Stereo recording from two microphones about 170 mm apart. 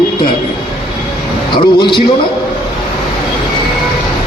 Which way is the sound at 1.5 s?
30° left (ahead or behind).